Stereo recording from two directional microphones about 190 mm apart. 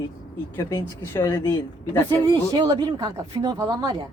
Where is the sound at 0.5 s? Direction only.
15° left (ahead or behind).